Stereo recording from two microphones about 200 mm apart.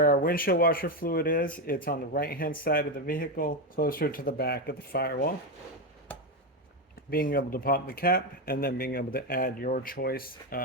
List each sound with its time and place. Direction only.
0.0 s speech: 45° left (ahead or behind)
7.1 s speech: 45° left (ahead or behind)